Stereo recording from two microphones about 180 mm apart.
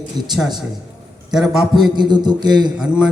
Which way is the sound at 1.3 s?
Centre (ahead or behind).